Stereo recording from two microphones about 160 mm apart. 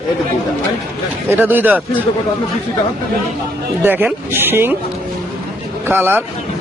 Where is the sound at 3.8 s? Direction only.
10° right (ahead or behind).